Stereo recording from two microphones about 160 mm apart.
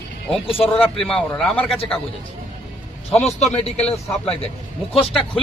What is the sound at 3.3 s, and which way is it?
A man's voice, 45° left (ahead or behind).